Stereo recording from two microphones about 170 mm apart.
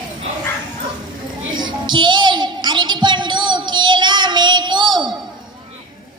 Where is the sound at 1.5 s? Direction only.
25° right (ahead or behind).